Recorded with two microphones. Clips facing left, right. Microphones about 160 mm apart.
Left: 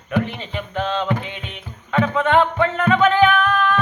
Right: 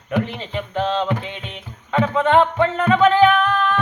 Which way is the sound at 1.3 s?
30° right (ahead or behind).